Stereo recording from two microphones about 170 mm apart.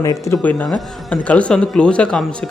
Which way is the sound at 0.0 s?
20° left (ahead or behind).